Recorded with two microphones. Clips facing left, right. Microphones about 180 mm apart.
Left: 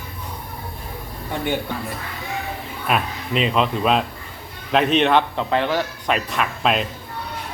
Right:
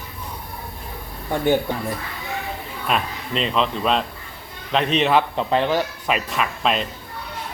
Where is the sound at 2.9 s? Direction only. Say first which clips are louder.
Left 1 dB; 5° left (ahead or behind).